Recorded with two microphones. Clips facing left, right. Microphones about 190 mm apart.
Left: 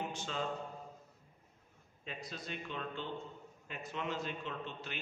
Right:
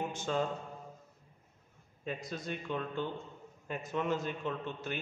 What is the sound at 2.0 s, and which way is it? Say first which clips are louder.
A man's voice: right 6 dB; 50° right (ahead or behind).